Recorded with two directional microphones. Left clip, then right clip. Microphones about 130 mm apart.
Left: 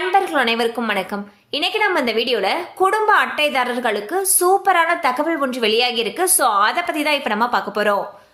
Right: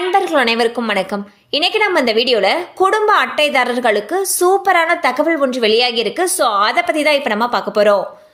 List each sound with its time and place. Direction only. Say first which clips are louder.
0.1 s a woman's voice: right 3 dB; 30° right (ahead or behind)